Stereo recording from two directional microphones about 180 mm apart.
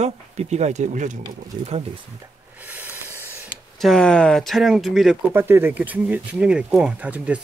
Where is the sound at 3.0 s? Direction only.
15° right (ahead or behind).